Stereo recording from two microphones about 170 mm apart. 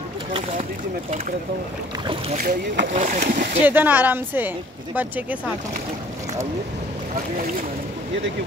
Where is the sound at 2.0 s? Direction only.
35° right (ahead or behind).